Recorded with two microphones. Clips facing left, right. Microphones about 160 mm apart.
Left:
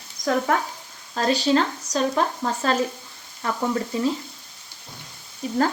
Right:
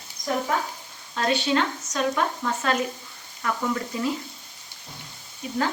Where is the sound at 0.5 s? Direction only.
65° left (ahead or behind).